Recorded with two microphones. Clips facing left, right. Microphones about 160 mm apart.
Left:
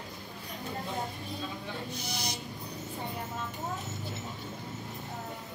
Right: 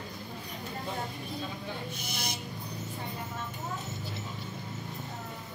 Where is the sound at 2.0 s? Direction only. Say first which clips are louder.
Left 1 dB; 55° right (ahead or behind).